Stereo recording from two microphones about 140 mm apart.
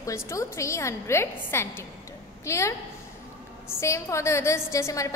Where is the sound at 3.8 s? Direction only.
20° left (ahead or behind).